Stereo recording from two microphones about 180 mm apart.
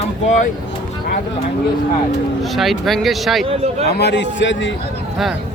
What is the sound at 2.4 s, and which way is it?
Speech, centre (ahead or behind).